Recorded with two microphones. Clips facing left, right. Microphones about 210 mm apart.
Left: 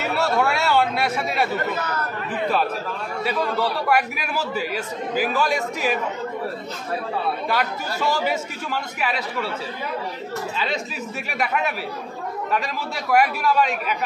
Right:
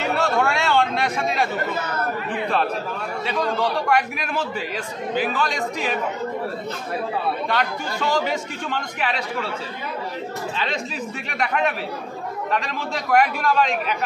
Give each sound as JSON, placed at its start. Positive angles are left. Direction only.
{"t": 0.0, "sound": "chatter", "side_deg": 5}
{"t": 3.3, "sound": "a man's voice", "side_deg": 5}
{"t": 7.4, "sound": "a man's voice", "side_deg": 5}
{"t": 11.2, "sound": "a man's voice", "side_deg": 5}